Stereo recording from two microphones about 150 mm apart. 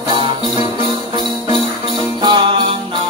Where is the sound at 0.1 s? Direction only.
35° right (ahead or behind).